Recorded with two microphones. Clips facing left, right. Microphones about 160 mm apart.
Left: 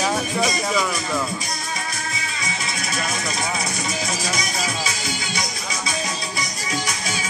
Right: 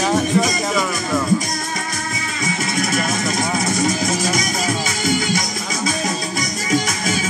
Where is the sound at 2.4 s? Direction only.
50° right (ahead or behind).